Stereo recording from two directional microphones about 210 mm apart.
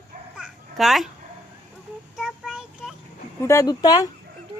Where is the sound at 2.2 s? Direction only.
Centre (ahead or behind).